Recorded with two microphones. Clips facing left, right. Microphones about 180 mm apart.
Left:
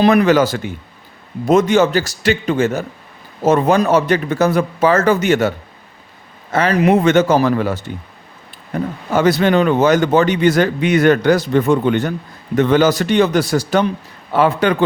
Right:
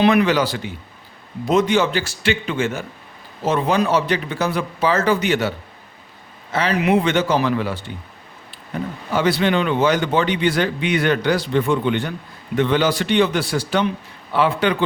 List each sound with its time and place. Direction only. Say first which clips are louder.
0.0 s a man's voice: left 4 dB; 40° left (ahead or behind)